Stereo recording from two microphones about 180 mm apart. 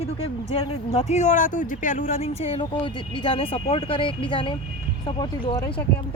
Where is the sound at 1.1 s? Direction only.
40° left (ahead or behind); by 5.8 s 20° left (ahead or behind).